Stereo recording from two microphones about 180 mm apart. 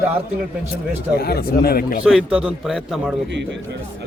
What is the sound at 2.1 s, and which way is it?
A man's voice, 5° right (ahead or behind).